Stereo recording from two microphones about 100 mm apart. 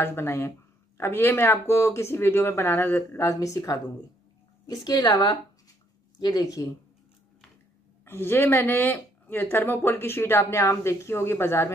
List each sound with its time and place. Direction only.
0.0 s speech: 25° left (ahead or behind)
8.0 s speech: 25° left (ahead or behind)